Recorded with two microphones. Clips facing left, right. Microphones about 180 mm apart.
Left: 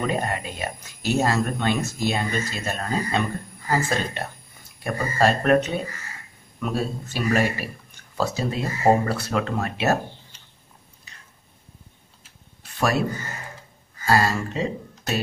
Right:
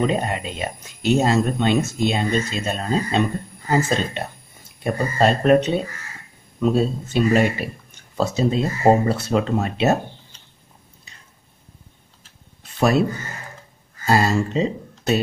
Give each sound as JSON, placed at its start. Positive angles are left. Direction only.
{"t": 0.0, "sound": "speech", "side_deg": -20}
{"t": 12.7, "sound": "speech", "side_deg": -25}
{"t": 14.0, "sound": "speech", "side_deg": -25}